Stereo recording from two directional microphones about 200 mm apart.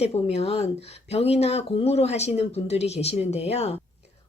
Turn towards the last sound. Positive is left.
turn(degrees=30)  # may be behind; listen again after turning